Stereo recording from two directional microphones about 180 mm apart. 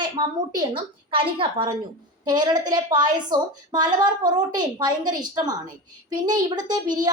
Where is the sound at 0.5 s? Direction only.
30° right (ahead or behind).